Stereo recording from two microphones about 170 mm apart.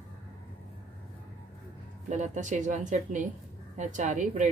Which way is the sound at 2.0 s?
45° right (ahead or behind).